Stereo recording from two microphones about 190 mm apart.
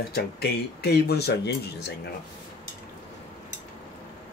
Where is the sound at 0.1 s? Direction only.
60° left (ahead or behind).